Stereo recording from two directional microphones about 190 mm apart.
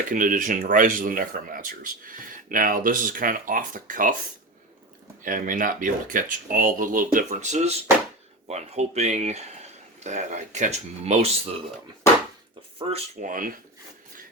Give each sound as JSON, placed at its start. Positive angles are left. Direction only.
{"t": 0.1, "sound": "speech", "side_deg": -45}
{"t": 5.2, "sound": "speech", "side_deg": -45}
{"t": 12.9, "sound": "speech", "side_deg": -45}